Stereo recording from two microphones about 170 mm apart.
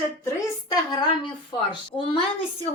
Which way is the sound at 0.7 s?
25° left (ahead or behind).